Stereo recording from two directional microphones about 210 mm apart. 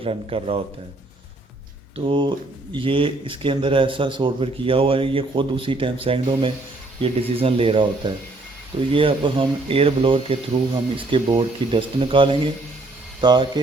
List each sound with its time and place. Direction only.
0.0 s speech: 25° right (ahead or behind)
2.0 s speech: 25° right (ahead or behind)